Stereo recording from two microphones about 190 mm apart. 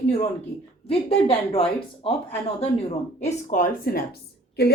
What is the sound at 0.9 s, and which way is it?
Speech, 30° left (ahead or behind).